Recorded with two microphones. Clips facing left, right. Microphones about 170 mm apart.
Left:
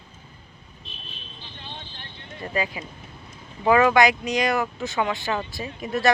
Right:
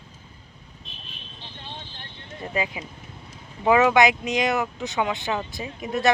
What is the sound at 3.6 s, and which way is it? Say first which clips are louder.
Speech: even; 5° right (ahead or behind).